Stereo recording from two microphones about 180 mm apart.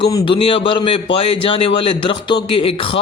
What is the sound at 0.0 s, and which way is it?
A man's voice, 25° left (ahead or behind).